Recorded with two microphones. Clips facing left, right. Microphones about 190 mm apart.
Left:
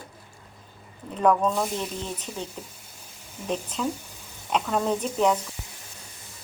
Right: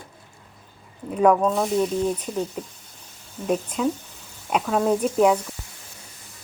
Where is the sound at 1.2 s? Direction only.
10° right (ahead or behind).